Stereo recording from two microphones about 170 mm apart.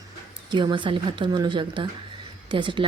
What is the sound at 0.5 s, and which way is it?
A woman's voice, 25° right (ahead or behind).